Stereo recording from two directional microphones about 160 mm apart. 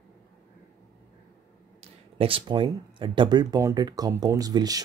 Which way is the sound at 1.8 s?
35° right (ahead or behind).